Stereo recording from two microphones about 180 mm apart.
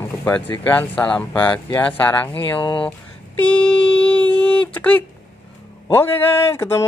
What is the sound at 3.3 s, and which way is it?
Speech, 10° left (ahead or behind).